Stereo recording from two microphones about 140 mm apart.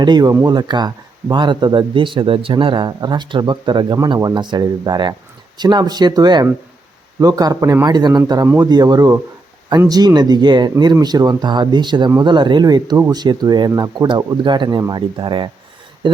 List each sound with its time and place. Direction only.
0.0 s speech: 30° right (ahead or behind)